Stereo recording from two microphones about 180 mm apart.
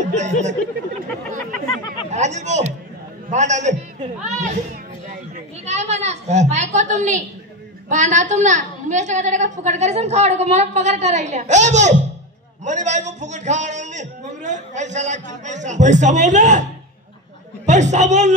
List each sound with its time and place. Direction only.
0.1 s a woman's voice: 40° right (ahead or behind)
2.0 s a woman's voice: 40° right (ahead or behind)
5.7 s a woman's voice: 40° right (ahead or behind)
17.6 s a woman's voice: 40° right (ahead or behind)